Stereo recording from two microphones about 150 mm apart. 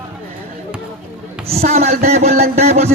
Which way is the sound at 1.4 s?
40° right (ahead or behind).